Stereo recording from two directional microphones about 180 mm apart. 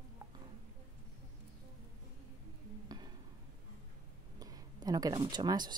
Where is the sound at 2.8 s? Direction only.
25° right (ahead or behind).